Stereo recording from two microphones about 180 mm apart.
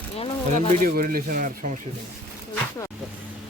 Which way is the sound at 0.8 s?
50° right (ahead or behind).